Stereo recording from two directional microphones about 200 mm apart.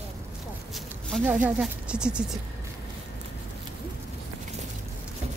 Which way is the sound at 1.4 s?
5° right (ahead or behind).